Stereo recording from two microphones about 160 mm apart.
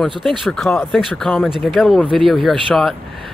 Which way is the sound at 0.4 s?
Centre (ahead or behind).